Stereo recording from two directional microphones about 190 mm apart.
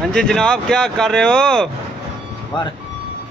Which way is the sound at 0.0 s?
5° left (ahead or behind).